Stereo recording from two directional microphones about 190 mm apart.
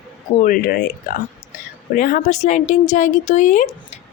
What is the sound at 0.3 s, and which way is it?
Speech, 45° left (ahead or behind).